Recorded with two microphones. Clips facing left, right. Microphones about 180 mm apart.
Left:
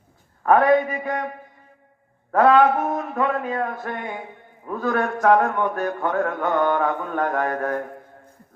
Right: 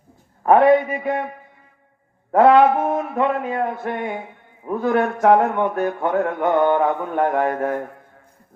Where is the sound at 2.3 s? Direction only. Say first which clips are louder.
Right 3 dB; 25° right (ahead or behind).